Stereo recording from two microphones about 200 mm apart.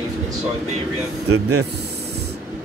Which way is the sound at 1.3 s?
90° right.